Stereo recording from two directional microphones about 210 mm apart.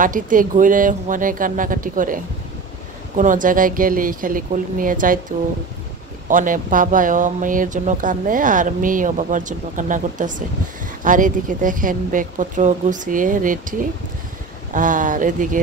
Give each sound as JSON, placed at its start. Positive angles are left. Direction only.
{"t": 0.0, "sound": "speech", "side_deg": -40}
{"t": 3.2, "sound": "speech", "side_deg": -40}
{"t": 6.2, "sound": "speech", "side_deg": -40}